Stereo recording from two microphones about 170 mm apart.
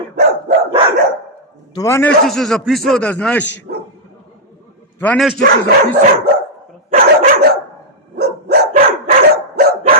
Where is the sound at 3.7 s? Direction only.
65° right (ahead or behind).